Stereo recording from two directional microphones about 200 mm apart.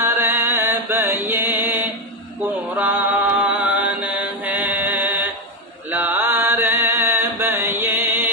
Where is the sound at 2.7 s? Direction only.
10° right (ahead or behind).